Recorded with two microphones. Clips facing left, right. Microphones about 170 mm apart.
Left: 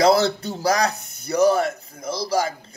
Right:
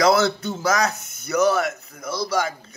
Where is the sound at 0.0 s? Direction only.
30° left (ahead or behind).